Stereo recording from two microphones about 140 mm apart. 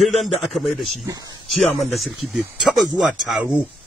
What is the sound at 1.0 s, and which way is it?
Speech, 30° right (ahead or behind).